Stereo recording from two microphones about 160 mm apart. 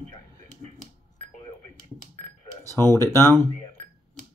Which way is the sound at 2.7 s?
15° left (ahead or behind).